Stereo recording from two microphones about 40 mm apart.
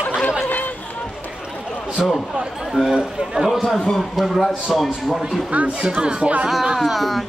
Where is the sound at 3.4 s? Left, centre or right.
Centre.